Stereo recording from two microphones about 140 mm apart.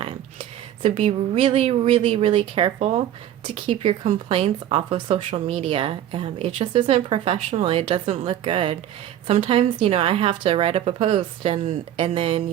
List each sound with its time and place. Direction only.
0.0 s speech: 40° right (ahead or behind)
3.4 s a woman's voice: 40° right (ahead or behind)